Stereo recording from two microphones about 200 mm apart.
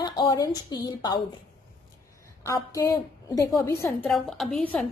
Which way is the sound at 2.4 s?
15° left (ahead or behind).